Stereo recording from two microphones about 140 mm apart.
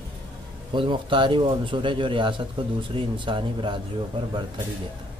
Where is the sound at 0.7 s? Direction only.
35° right (ahead or behind).